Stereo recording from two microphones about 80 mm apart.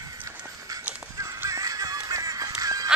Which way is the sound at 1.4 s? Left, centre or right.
Right.